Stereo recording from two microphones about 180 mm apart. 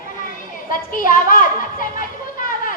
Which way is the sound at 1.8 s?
50° left (ahead or behind).